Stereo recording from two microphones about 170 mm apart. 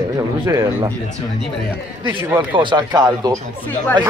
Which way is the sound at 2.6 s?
25° right (ahead or behind).